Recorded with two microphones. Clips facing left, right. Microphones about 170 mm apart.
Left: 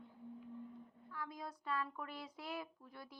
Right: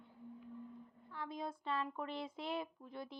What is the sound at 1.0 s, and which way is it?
A woman's voice, 25° right (ahead or behind).